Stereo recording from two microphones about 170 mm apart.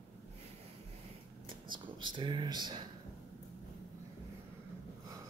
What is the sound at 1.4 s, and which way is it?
Speech, 30° right (ahead or behind).